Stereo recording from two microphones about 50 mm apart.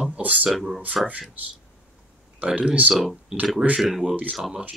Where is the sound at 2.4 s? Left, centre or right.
Right.